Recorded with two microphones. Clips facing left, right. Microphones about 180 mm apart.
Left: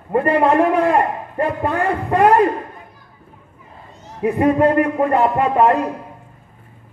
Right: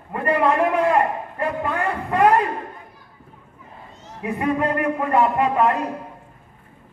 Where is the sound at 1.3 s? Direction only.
35° left (ahead or behind).